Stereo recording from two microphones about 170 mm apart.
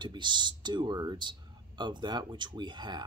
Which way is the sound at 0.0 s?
25° right (ahead or behind).